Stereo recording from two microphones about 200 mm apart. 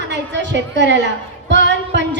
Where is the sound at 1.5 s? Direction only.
60° right (ahead or behind).